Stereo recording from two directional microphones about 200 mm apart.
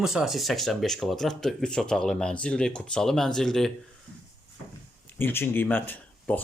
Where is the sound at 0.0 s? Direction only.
5° right (ahead or behind).